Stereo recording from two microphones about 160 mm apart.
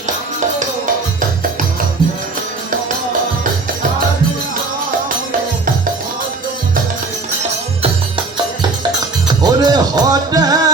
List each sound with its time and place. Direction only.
9.2 s music: 25° right (ahead or behind)